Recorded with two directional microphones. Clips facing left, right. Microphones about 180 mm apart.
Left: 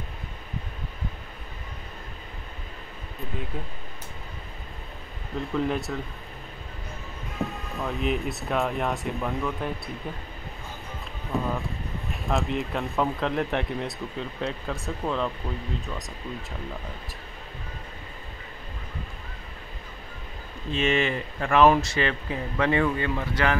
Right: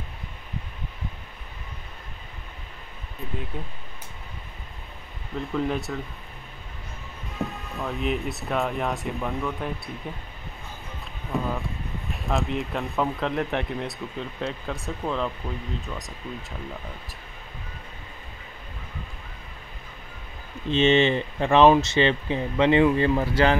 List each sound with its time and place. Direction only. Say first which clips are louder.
3.5 s speech: even; centre (ahead or behind)
5.4 s speech: even; centre (ahead or behind)
7.3 s speech: even; centre (ahead or behind)
11.3 s speech: even; centre (ahead or behind)
20.7 s speech: right 5 dB; 25° right (ahead or behind)
22.9 s speech: right 6 dB; 30° right (ahead or behind)